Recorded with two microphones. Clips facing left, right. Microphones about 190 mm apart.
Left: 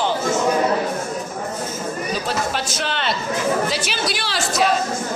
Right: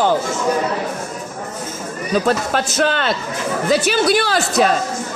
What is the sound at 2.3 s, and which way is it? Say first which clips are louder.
Speech: right 5 dB; 45° right (ahead or behind).